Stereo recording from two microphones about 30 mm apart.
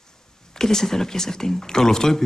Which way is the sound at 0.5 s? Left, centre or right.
Centre.